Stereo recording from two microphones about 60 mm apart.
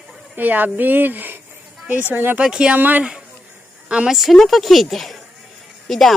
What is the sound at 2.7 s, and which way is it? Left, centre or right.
Speech, right.